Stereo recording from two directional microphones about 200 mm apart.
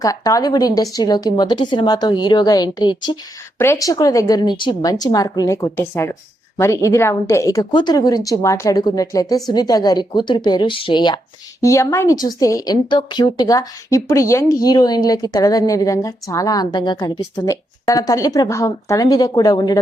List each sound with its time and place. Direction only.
0.0 s a woman's voice: 15° left (ahead or behind)